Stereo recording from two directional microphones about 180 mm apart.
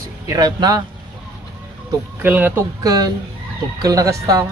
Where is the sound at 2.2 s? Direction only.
10° right (ahead or behind).